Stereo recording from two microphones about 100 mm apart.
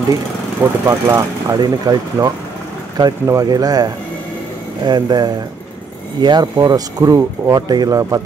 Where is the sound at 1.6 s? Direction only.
40° right (ahead or behind).